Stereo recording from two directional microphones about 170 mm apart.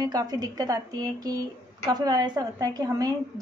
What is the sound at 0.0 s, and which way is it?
A woman's voice, 25° right (ahead or behind).